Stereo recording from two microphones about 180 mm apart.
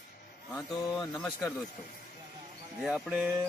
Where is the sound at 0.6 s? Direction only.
5° left (ahead or behind).